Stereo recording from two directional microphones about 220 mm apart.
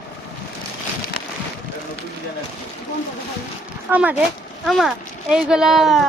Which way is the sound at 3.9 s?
10° right (ahead or behind).